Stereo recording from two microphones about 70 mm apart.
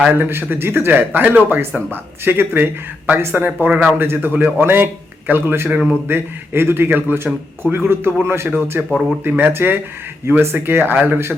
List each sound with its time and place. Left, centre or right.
0.2 s a man's voice: right
8.9 s speech: centre
9.4 s a man's voice: right